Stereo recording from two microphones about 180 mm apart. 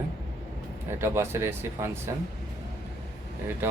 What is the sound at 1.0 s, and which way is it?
Speech, 15° right (ahead or behind).